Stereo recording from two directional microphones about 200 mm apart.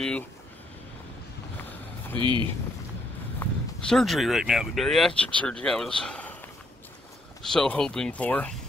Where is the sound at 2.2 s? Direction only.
25° right (ahead or behind).